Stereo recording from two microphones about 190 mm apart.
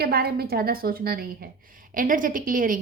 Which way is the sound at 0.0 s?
55° right (ahead or behind).